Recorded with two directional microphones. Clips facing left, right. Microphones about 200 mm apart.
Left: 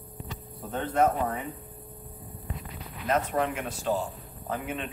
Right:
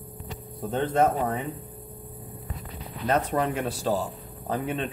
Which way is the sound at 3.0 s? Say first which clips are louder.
Right 2 dB; 35° right (ahead or behind).